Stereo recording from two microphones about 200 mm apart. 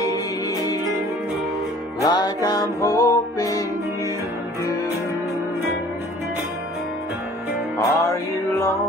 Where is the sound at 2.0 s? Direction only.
20° left (ahead or behind).